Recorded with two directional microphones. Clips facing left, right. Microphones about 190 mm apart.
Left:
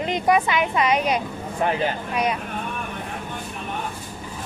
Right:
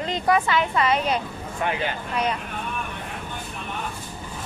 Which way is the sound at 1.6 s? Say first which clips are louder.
Left 4 dB; 35° left (ahead or behind).